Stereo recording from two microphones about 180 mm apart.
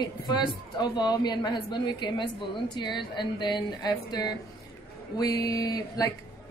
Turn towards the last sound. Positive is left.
turn(degrees=20)  # may be behind; listen again after turning